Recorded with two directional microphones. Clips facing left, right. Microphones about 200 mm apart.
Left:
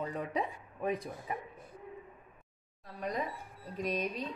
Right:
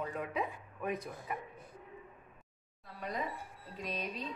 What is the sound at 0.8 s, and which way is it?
Speech, 30° left (ahead or behind).